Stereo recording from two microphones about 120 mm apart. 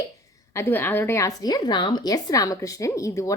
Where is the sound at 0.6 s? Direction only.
20° left (ahead or behind).